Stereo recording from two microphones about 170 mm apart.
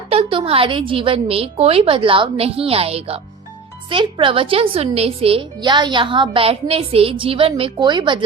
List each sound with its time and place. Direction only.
0.1 s a woman's voice: 35° right (ahead or behind)